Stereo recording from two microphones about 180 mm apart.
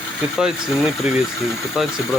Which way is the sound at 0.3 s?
5° right (ahead or behind).